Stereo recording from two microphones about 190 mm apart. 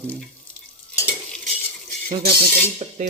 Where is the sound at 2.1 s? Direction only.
45° right (ahead or behind).